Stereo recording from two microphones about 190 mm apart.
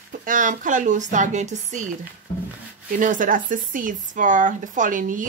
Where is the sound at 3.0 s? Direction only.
45° right (ahead or behind).